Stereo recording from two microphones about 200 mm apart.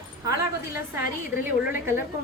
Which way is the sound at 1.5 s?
10° right (ahead or behind).